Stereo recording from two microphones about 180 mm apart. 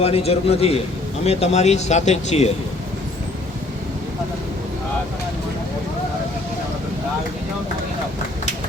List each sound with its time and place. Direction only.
0.0 s speech: 35° left (ahead or behind)